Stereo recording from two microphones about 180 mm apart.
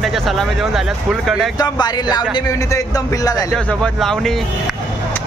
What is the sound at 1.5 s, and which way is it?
Speech, 25° left (ahead or behind).